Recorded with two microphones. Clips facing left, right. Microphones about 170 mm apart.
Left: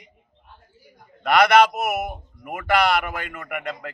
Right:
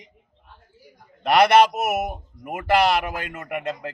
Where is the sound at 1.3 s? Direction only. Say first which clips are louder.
Even; 30° right (ahead or behind).